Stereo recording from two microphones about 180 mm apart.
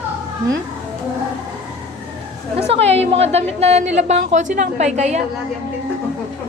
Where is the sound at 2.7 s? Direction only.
35° right (ahead or behind).